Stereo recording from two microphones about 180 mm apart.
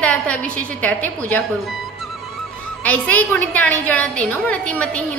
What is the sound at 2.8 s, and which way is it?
A woman's voice, 10° left (ahead or behind).